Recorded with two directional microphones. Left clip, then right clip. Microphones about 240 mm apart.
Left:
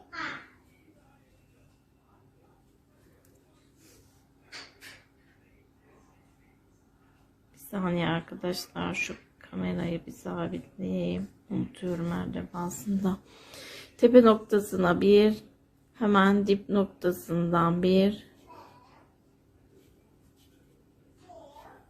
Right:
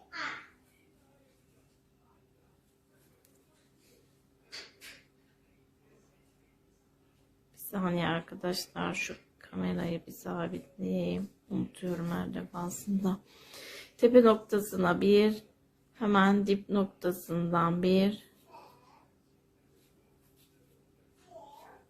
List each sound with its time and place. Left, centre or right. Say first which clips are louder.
7.5 s speech: left 2 dB; centre